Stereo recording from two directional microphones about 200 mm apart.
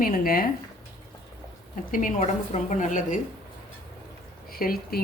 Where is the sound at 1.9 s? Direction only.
40° left (ahead or behind).